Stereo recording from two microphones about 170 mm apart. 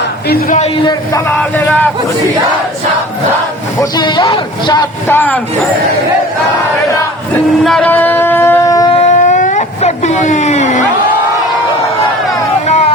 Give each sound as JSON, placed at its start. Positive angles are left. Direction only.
{"t": 0.3, "sound": "a man's voice", "side_deg": 65}
{"t": 1.4, "sound": "a sound", "side_deg": 10}
{"t": 3.8, "sound": "speech", "side_deg": 25}
{"t": 5.0, "sound": "a sound", "side_deg": 10}
{"t": 7.6, "sound": "music", "side_deg": 5}
{"t": 8.9, "sound": "speech", "side_deg": 40}
{"t": 12.6, "sound": "music", "side_deg": 40}